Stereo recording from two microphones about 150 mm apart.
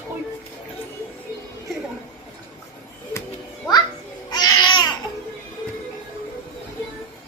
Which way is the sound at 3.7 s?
25° left (ahead or behind).